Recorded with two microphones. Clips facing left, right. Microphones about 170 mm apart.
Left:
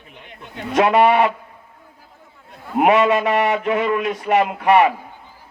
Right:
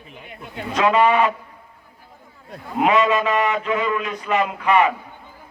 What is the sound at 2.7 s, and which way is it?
Speech, 55° left (ahead or behind).